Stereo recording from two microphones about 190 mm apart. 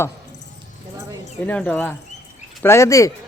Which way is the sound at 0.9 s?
15° right (ahead or behind).